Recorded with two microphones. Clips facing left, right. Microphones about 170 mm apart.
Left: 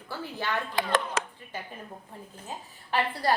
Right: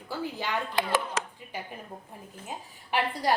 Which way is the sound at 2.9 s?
15° right (ahead or behind).